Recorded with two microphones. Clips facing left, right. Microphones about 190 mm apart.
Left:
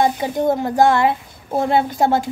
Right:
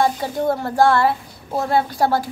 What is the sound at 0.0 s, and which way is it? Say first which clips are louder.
A child's voice: left 2 dB; 20° left (ahead or behind).